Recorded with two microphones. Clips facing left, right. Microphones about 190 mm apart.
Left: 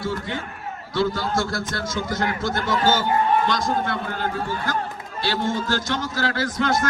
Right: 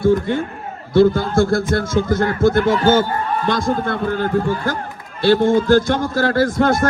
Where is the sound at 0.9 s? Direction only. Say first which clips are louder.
Right 10 dB; 55° right (ahead or behind).